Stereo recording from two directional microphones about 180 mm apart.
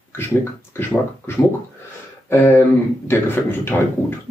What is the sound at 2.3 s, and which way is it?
Speech, 10° left (ahead or behind).